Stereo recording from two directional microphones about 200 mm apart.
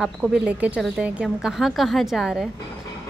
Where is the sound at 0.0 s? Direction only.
5° right (ahead or behind).